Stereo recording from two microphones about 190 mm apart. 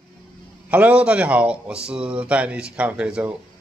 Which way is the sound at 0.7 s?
5° right (ahead or behind).